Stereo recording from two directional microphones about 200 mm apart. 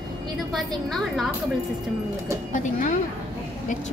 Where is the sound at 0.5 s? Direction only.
Centre (ahead or behind).